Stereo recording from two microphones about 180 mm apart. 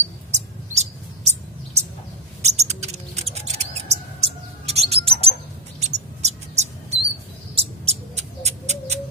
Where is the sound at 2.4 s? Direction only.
40° right (ahead or behind).